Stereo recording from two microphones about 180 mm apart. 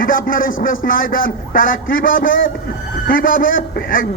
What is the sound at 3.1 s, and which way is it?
Speech, 50° left (ahead or behind).